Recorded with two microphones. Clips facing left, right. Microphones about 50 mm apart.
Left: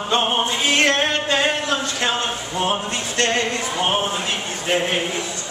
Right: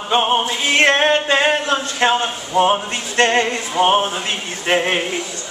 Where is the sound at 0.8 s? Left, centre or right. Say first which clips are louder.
Right 5 dB; right.